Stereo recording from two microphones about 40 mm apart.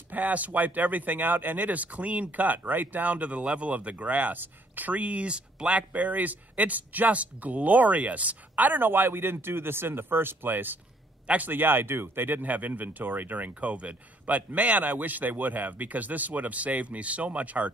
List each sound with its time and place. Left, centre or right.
0.1 s speech: right
11.2 s a man's voice: right
11.5 s speech: right
13.6 s speech: right
14.2 s speech: right